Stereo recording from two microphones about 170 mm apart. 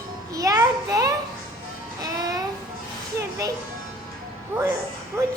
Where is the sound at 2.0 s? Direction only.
20° right (ahead or behind).